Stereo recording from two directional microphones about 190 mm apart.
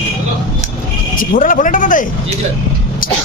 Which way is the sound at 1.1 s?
45° left (ahead or behind).